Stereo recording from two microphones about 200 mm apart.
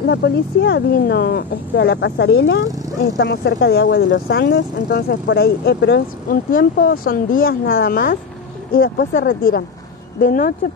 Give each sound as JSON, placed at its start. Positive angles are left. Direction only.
{"t": 0.0, "sound": "speech", "side_deg": 60}
{"t": 3.2, "sound": "speech", "side_deg": 60}